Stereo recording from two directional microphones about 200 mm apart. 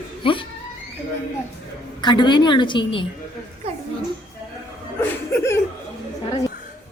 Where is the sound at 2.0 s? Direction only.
20° left (ahead or behind).